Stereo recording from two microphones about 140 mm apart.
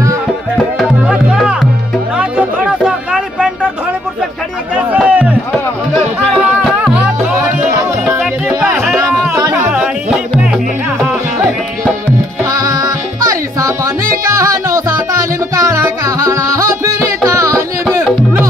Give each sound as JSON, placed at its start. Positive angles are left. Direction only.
{"t": 0.7, "sound": "music", "side_deg": -5}
{"t": 4.7, "sound": "a sound", "side_deg": -10}
{"t": 6.3, "sound": "music", "side_deg": -10}
{"t": 8.0, "sound": "music", "side_deg": -10}
{"t": 12.4, "sound": "music", "side_deg": -25}